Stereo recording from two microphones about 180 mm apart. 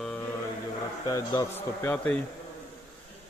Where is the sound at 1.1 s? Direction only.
20° left (ahead or behind).